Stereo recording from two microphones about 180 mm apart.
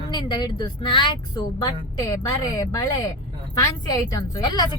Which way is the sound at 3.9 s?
20° left (ahead or behind).